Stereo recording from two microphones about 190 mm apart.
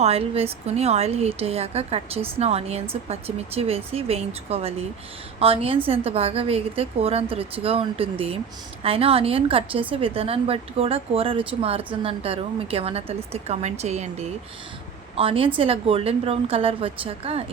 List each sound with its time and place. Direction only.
0.0 s a woman's voice: 30° right (ahead or behind)